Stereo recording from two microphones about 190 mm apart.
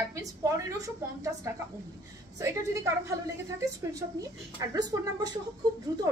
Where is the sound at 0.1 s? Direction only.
15° right (ahead or behind).